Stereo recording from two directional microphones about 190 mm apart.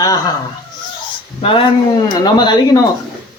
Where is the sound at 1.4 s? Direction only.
30° left (ahead or behind).